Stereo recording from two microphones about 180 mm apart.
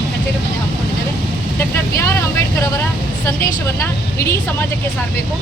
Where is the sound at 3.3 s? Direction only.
15° left (ahead or behind).